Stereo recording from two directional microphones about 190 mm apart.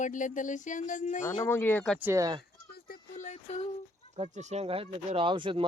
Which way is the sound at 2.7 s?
45° left (ahead or behind).